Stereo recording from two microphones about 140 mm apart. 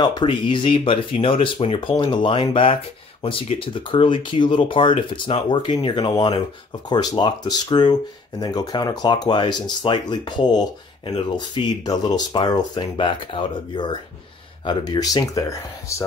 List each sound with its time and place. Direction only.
0.0 s speech: 35° left (ahead or behind)